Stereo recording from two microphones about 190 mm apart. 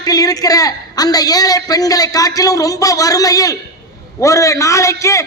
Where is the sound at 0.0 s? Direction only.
20° left (ahead or behind).